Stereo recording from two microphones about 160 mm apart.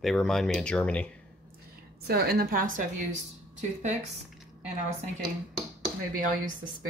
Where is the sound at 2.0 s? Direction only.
75° right (ahead or behind).